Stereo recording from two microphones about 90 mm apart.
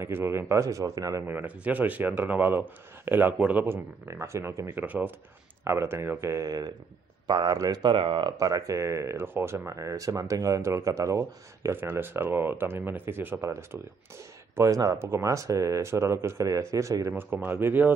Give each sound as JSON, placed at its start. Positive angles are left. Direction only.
{"t": 0.0, "sound": "speech", "side_deg": -30}
{"t": 1.2, "sound": "speech", "side_deg": -20}
{"t": 7.8, "sound": "speech", "side_deg": -70}
{"t": 8.4, "sound": "speech", "side_deg": -40}
{"t": 17.1, "sound": "speech", "side_deg": -20}